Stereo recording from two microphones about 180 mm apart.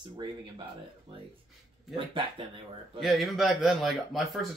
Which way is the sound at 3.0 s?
Centre (ahead or behind).